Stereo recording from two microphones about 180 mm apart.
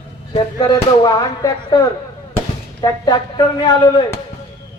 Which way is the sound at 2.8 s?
20° left (ahead or behind).